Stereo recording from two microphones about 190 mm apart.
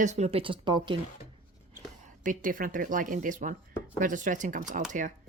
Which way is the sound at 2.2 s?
45° right (ahead or behind).